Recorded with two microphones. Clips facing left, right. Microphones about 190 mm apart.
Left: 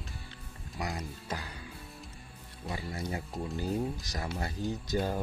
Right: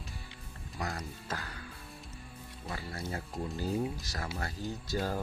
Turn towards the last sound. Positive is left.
turn(degrees=20)  # may be behind; listen again after turning